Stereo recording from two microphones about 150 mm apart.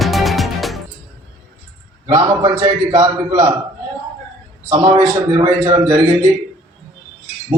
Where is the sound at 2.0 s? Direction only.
30° right (ahead or behind).